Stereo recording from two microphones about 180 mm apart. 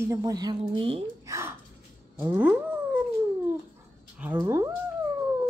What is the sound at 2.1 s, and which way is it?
Speech, 15° right (ahead or behind).